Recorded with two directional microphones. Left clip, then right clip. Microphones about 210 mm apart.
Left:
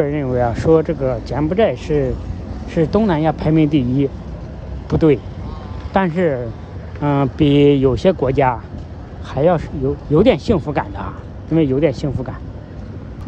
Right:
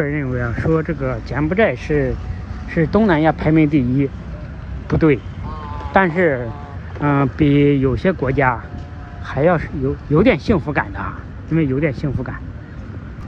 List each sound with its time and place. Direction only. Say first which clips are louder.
0.0 s speech: left 5 dB; 20° left (ahead or behind)
3.0 s speech: right 2 dB; 5° left (ahead or behind)